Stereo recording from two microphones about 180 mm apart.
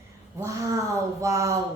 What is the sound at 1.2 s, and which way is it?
Speech, 15° right (ahead or behind).